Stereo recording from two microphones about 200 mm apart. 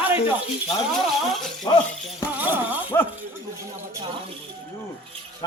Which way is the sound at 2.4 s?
10° right (ahead or behind).